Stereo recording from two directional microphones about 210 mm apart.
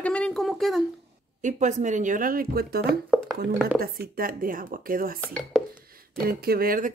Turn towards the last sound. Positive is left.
turn(degrees=-45)  # may be behind; listen again after turning